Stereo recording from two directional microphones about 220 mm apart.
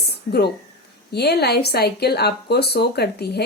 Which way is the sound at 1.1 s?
45° left (ahead or behind).